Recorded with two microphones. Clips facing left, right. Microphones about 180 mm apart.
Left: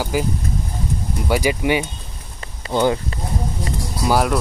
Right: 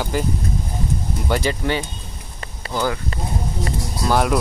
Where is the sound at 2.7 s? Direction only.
25° left (ahead or behind).